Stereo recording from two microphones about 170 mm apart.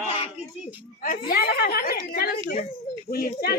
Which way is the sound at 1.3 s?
65° left (ahead or behind).